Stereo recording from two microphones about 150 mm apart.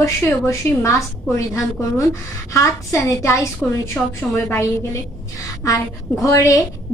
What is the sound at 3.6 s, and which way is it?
Speech, 5° left (ahead or behind).